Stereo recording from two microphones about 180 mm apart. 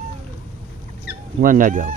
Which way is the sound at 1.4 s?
45° right (ahead or behind).